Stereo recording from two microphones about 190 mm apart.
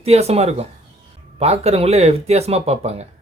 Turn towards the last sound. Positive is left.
turn(degrees=-35)  # may be behind; listen again after turning